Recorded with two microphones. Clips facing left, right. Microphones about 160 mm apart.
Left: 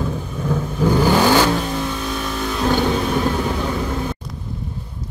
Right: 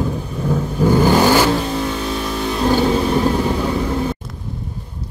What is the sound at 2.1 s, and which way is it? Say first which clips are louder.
Vehicle: right 2 dB; 25° right (ahead or behind).